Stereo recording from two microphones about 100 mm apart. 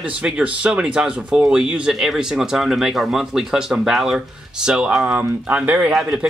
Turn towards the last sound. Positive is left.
turn(degrees=-5)  # may be behind; listen again after turning